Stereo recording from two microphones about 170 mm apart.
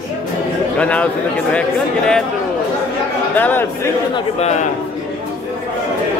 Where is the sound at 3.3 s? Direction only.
10° left (ahead or behind).